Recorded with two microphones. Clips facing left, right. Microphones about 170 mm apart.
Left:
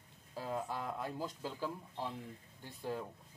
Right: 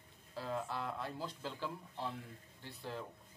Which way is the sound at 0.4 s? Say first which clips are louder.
Left 1 dB; 15° left (ahead or behind).